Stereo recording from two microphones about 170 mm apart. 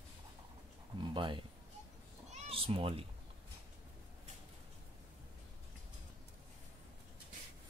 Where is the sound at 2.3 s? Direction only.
35° right (ahead or behind).